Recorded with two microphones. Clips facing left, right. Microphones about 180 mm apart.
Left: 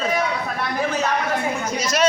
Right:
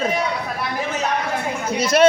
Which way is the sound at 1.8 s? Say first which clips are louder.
Right 9 dB; 55° right (ahead or behind).